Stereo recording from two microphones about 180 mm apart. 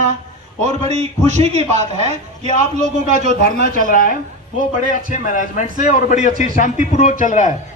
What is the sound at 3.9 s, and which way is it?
A man's voice, 50° left (ahead or behind).